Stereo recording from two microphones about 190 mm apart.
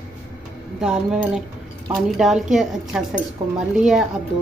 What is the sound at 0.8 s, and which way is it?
A woman's voice, 5° right (ahead or behind).